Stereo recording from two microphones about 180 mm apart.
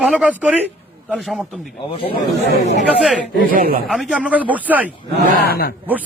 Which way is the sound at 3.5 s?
55° right (ahead or behind).